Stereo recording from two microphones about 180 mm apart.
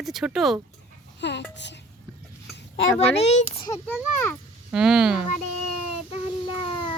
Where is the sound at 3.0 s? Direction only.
35° left (ahead or behind).